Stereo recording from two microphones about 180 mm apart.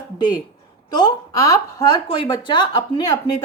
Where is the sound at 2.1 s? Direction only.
30° left (ahead or behind).